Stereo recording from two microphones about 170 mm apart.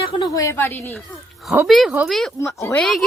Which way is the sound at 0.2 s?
20° left (ahead or behind).